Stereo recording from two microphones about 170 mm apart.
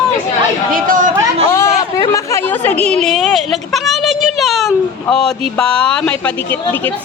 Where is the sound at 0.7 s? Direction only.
50° right (ahead or behind).